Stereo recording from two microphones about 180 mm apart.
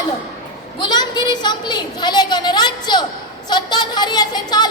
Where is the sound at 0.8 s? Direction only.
25° left (ahead or behind).